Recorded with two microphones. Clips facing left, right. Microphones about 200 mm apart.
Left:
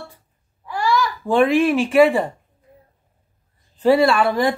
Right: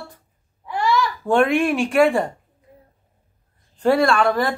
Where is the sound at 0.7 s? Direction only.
25° right (ahead or behind).